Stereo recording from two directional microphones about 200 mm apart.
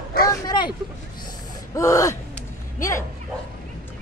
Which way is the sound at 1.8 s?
15° left (ahead or behind).